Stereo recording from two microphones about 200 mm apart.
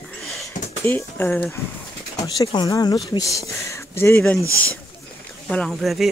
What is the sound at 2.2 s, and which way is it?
Speech, 20° left (ahead or behind).